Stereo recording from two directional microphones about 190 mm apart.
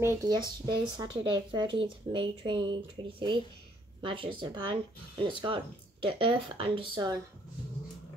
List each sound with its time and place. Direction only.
0.0 s speech: 15° right (ahead or behind)